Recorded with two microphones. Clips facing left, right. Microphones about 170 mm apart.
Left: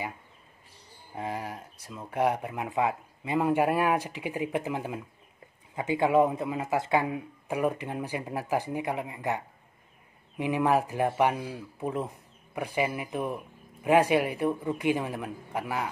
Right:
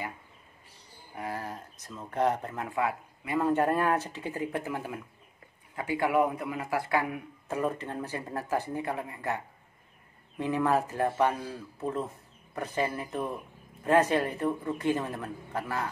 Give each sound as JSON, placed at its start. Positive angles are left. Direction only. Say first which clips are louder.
{"t": 1.1, "sound": "a man's voice", "louder": "left 2 dB", "side_deg": 20}
{"t": 3.4, "sound": "a man's voice", "louder": "left 1 dB", "side_deg": 10}